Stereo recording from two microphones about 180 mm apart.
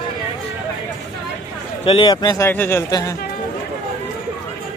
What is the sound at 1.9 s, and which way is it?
Speech, 25° left (ahead or behind).